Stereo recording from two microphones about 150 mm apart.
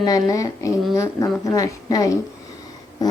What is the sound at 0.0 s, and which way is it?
Speech, 25° left (ahead or behind).